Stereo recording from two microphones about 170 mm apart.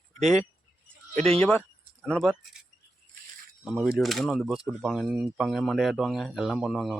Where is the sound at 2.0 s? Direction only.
5° left (ahead or behind).